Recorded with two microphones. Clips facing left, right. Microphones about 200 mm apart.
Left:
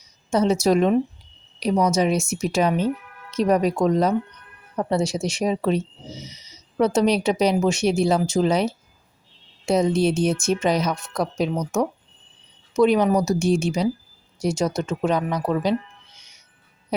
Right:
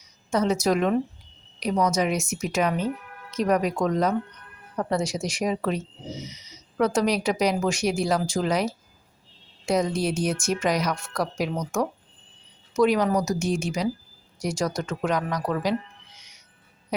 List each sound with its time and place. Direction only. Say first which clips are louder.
0.3 s speech: left 4 dB; 30° left (ahead or behind)